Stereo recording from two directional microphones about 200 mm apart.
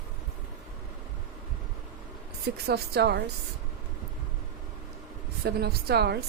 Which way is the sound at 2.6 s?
55° right (ahead or behind).